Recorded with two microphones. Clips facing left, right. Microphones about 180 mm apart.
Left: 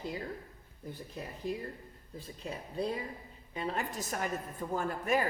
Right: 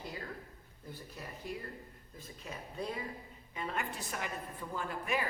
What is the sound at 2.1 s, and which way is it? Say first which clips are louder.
A man's voice: left 5 dB; 35° left (ahead or behind).